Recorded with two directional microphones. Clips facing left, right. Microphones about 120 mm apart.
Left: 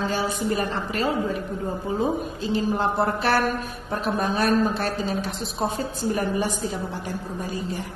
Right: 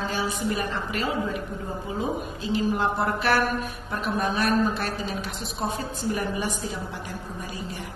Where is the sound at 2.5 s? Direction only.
35° left (ahead or behind).